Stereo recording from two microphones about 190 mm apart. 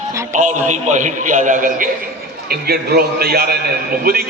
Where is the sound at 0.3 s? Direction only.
40° right (ahead or behind).